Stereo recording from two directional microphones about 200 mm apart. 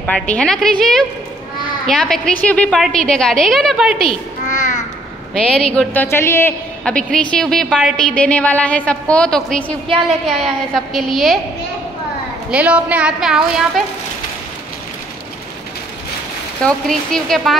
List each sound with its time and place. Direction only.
0.0 s a woman's voice: 5° left (ahead or behind)
4.5 s a sound: 40° left (ahead or behind)
5.3 s a woman's voice: 5° left (ahead or behind)
12.4 s a woman's voice: 5° right (ahead or behind)
16.6 s a woman's voice: centre (ahead or behind)